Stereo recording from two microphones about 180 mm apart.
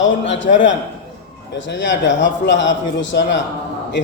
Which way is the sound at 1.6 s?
80° left.